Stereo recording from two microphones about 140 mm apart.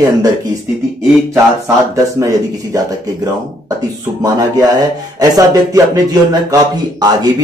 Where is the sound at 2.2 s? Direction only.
25° right (ahead or behind).